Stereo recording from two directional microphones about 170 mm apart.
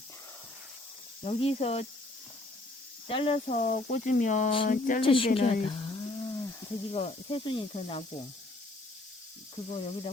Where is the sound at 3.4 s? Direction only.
50° left (ahead or behind).